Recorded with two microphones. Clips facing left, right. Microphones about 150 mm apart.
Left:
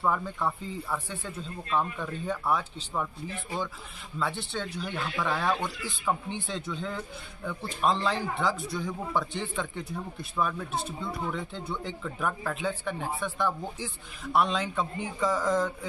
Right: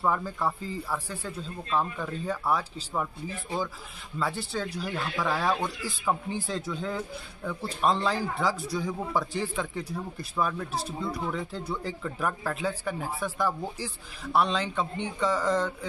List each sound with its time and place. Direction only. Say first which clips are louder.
0.0 s speech: right 1 dB; 5° right (ahead or behind)
10.7 s speech: right 1 dB; 35° right (ahead or behind)
11.2 s speech: right 2 dB; centre (ahead or behind)